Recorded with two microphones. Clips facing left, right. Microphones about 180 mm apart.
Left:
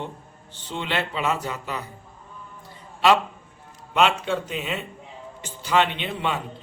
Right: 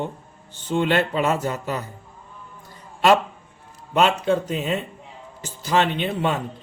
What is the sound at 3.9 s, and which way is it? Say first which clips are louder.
A man's voice: right 3 dB; 40° right (ahead or behind).